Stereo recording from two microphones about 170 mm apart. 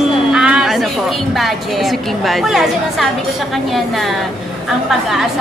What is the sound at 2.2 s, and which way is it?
Speech, centre (ahead or behind).